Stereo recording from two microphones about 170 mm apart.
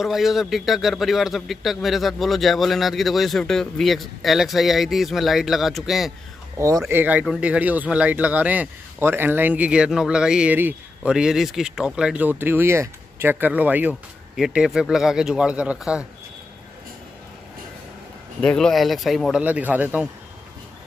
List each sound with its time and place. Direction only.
0.0 s a man's voice: centre (ahead or behind)
6.6 s speech: 15° right (ahead or behind)
18.4 s a man's voice: 5° left (ahead or behind)